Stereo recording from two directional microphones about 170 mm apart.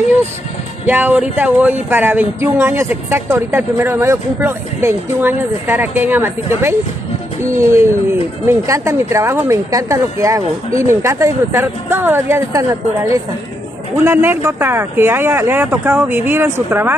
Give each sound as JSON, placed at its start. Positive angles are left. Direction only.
{"t": 0.8, "sound": "speech", "side_deg": -10}